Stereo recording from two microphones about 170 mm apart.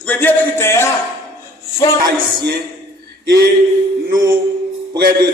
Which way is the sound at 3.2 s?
70° right (ahead or behind).